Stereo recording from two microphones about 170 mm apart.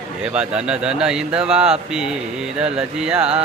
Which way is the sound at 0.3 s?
5° right (ahead or behind).